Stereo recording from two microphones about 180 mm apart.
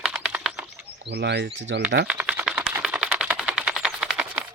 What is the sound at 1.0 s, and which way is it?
Speech, 70° right (ahead or behind).